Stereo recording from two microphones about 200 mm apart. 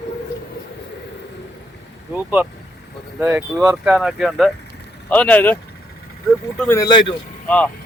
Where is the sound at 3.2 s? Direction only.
10° right (ahead or behind); by 5.6 s 10° left (ahead or behind).